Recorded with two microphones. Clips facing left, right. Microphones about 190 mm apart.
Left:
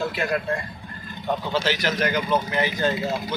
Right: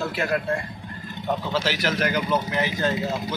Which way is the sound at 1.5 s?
5° right (ahead or behind).